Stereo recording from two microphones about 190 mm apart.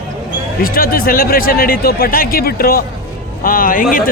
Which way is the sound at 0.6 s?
50° left (ahead or behind).